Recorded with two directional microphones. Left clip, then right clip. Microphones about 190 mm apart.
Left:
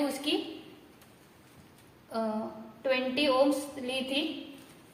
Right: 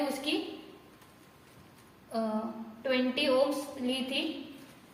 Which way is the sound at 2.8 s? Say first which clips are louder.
Left 1 dB; 50° left (ahead or behind).